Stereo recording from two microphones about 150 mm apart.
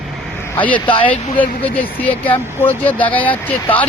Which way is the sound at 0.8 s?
35° left (ahead or behind).